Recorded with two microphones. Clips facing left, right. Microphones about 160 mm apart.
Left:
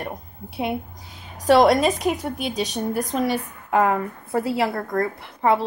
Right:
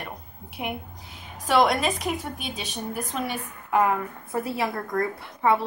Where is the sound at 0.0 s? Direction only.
40° left (ahead or behind).